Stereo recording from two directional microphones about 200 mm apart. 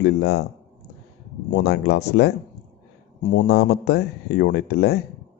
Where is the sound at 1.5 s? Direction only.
55° left (ahead or behind).